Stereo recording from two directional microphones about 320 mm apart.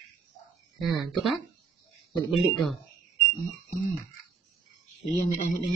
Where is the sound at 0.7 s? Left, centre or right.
Centre.